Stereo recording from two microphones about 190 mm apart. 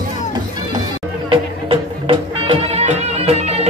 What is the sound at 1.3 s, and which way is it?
Music, 25° right (ahead or behind).